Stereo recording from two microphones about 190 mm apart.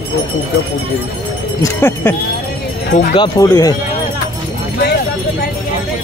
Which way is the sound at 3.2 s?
20° left (ahead or behind).